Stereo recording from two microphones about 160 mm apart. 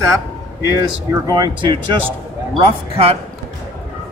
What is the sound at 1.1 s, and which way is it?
Speech, 25° right (ahead or behind).